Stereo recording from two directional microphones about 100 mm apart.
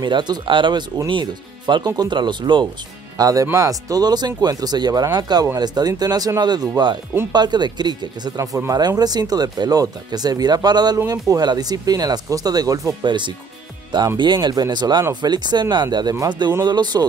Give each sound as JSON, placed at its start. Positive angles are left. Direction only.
{"t": 0.0, "sound": "speech", "side_deg": -50}
{"t": 3.2, "sound": "speech", "side_deg": -40}
{"t": 8.4, "sound": "speech", "side_deg": -30}
{"t": 8.7, "sound": "speech", "side_deg": -40}
{"t": 13.0, "sound": "speech", "side_deg": -50}